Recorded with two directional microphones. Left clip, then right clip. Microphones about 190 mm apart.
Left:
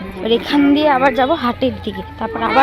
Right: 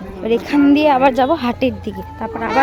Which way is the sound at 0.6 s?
50° right (ahead or behind).